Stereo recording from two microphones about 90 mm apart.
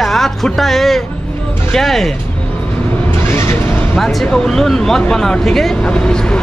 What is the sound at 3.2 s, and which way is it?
Vehicle, 30° left (ahead or behind).